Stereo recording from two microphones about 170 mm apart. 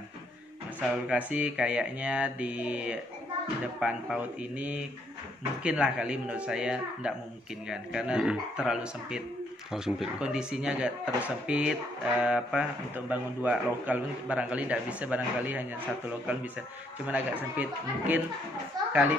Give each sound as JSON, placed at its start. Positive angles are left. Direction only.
{"t": 0.7, "sound": "speech", "side_deg": -10}
{"t": 17.0, "sound": "speech", "side_deg": -10}
{"t": 18.8, "sound": "a child's voice", "side_deg": -25}